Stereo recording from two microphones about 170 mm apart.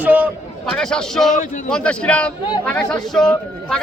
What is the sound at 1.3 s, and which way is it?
Speech, 50° left (ahead or behind).